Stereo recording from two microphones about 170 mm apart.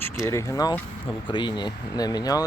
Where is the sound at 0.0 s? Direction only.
15° left (ahead or behind).